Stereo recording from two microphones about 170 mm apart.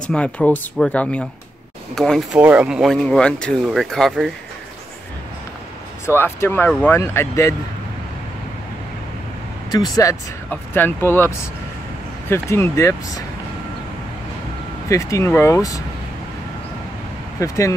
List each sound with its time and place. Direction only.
0.0 s speech: 5° left (ahead or behind)
6.0 s speech: 15° left (ahead or behind)
9.9 s speech: 15° left (ahead or behind)
14.9 s speech: 20° left (ahead or behind)
17.4 s speech: 15° left (ahead or behind)